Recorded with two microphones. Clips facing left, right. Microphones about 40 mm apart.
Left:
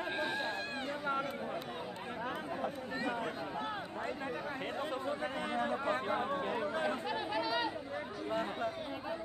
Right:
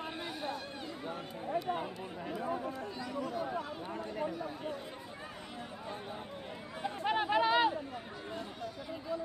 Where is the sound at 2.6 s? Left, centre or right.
Left.